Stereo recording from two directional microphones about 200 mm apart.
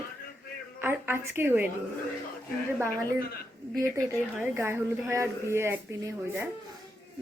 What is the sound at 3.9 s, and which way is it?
Speech, 15° right (ahead or behind).